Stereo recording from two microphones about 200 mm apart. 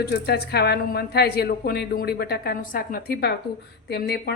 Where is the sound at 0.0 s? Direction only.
50° left (ahead or behind).